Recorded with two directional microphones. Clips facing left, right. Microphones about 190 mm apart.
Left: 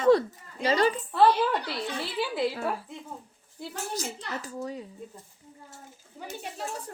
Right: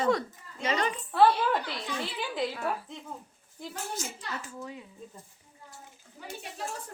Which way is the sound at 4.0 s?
40° left (ahead or behind).